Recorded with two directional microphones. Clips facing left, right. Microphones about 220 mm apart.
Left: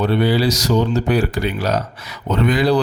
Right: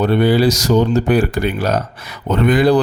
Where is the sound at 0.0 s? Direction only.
50° right (ahead or behind).